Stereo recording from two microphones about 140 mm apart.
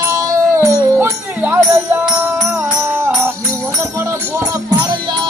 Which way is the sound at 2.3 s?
20° right (ahead or behind).